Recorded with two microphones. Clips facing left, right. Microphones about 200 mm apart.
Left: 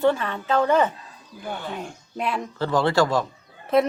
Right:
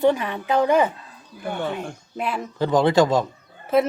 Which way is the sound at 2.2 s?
Centre (ahead or behind).